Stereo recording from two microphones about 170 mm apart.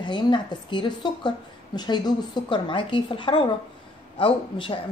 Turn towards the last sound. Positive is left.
turn(degrees=30)  # may be behind; listen again after turning